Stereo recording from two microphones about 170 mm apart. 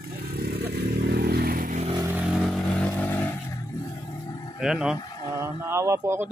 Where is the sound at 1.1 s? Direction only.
70° right (ahead or behind).